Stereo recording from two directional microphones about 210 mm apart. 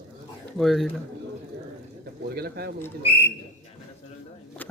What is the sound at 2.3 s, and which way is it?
Speech, 50° right (ahead or behind).